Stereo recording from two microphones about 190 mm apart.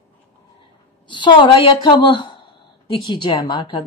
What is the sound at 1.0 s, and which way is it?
A woman's voice, 25° left (ahead or behind).